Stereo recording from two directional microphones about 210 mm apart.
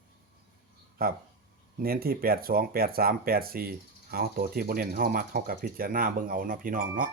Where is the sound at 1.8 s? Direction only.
45° right (ahead or behind).